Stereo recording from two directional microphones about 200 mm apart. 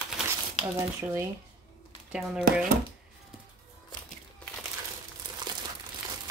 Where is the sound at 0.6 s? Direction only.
30° left (ahead or behind).